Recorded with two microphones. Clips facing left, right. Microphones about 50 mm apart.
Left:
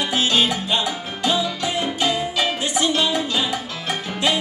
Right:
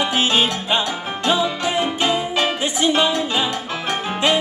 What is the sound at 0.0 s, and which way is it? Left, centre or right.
Music, right.